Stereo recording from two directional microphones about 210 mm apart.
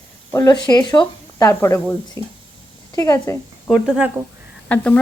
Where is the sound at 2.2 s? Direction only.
20° right (ahead or behind).